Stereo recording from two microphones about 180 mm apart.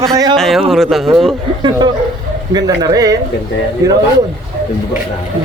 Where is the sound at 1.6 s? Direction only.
25° right (ahead or behind).